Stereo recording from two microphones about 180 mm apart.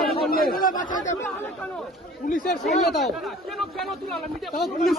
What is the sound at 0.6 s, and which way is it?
Speech, 50° left (ahead or behind).